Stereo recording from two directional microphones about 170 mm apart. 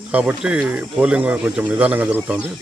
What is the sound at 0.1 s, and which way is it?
Speech, 5° right (ahead or behind).